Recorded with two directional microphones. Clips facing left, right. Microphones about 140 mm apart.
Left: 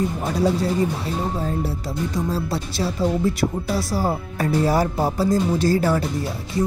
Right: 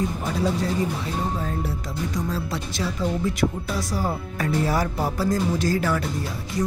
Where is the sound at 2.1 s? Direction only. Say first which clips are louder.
Left 4 dB; 30° left (ahead or behind).